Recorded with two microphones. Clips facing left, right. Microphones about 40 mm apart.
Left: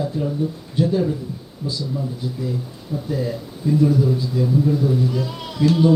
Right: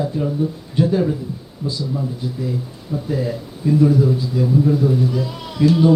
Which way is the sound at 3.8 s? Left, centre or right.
Right.